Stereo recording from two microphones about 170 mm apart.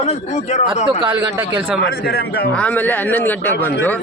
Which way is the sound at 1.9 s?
70° left (ahead or behind).